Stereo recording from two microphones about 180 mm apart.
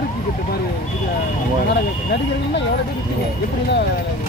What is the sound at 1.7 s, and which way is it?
Speech, 70° left (ahead or behind).